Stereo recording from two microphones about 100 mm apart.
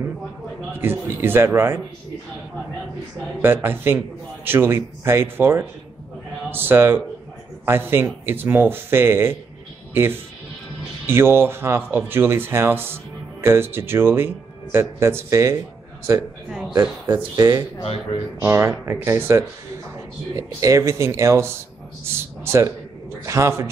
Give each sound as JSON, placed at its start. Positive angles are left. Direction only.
{"t": 0.7, "sound": "speech", "side_deg": -20}
{"t": 3.4, "sound": "speech", "side_deg": -20}
{"t": 11.1, "sound": "a man's voice", "side_deg": -25}